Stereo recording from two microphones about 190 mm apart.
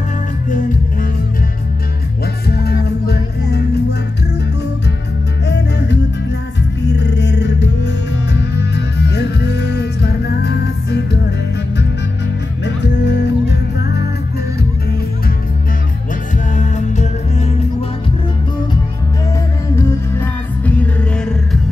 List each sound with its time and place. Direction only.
2.4 s music: 55° left (ahead or behind)
5.5 s music: 65° left (ahead or behind)
12.6 s music: 65° left (ahead or behind)
16.5 s music: 40° left (ahead or behind)
19.7 s music: 15° left (ahead or behind)